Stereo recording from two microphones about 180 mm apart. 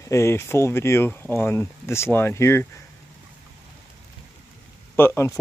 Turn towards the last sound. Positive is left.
turn(degrees=15)  # may be behind; listen again after turning